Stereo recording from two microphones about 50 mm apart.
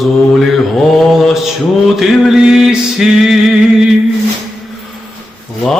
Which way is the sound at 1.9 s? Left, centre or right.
Centre.